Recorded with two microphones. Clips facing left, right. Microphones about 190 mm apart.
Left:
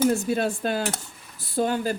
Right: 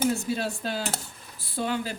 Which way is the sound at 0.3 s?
55° left (ahead or behind).